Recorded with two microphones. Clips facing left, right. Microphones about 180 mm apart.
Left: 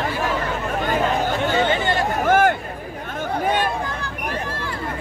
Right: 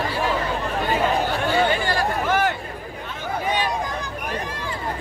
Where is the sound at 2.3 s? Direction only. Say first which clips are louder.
Left 7 dB; 50° left (ahead or behind).